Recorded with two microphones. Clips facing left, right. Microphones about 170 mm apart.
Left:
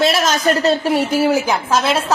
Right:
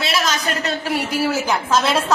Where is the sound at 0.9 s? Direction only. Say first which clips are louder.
Left 6 dB; 25° left (ahead or behind).